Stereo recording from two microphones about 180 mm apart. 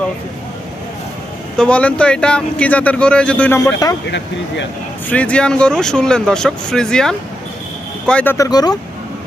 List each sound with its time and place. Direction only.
1.5 s speech: 5° left (ahead or behind)
3.6 s speech: 20° left (ahead or behind)
5.0 s speech: 5° left (ahead or behind)